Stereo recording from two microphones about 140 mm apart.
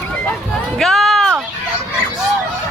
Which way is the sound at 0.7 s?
Centre (ahead or behind).